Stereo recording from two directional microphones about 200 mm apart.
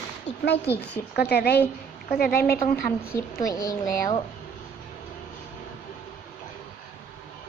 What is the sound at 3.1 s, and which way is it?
A woman's voice, 15° left (ahead or behind).